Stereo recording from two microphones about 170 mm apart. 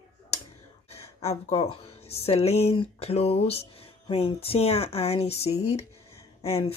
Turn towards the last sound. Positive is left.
turn(degrees=35)  # may be behind; listen again after turning